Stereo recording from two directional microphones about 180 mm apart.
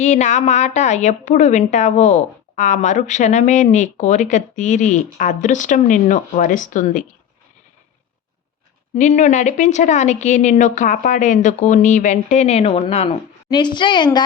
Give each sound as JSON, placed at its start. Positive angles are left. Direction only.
{"t": 0.0, "sound": "a woman's voice", "side_deg": 40}
{"t": 9.0, "sound": "a woman's voice", "side_deg": 40}